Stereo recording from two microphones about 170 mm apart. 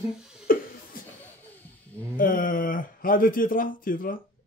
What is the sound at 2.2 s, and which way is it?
Speech, 55° left (ahead or behind).